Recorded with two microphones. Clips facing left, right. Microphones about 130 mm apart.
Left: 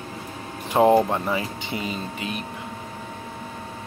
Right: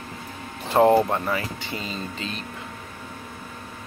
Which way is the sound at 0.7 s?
15° left (ahead or behind).